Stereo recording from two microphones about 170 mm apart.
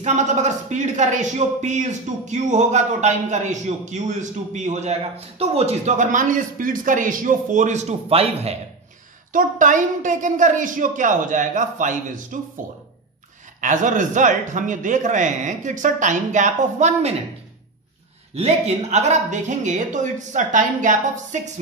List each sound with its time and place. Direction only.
0.0 s a man's voice: 45° right (ahead or behind)
9.3 s a man's voice: 50° right (ahead or behind)
13.6 s a man's voice: 50° right (ahead or behind)
18.3 s a man's voice: 40° right (ahead or behind)